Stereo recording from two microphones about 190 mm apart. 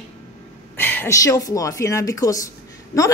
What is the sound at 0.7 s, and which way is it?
Speech, 10° left (ahead or behind).